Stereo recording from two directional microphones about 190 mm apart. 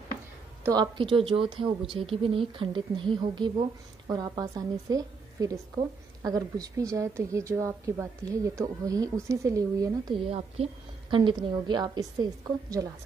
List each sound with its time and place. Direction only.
0.7 s a woman's voice: 25° right (ahead or behind)